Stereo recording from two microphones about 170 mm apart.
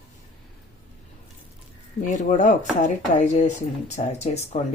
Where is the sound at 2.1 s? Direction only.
45° left (ahead or behind).